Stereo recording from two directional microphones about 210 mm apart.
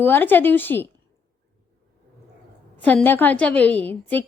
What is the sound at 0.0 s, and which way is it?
Speech, 10° left (ahead or behind).